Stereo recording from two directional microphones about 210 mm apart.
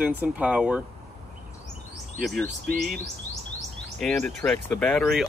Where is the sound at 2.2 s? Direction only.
Centre (ahead or behind).